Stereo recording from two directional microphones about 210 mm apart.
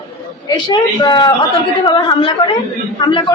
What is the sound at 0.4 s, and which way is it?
A woman's voice, 20° left (ahead or behind).